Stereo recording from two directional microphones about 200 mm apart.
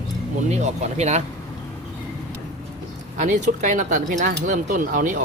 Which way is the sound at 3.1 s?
35° right (ahead or behind).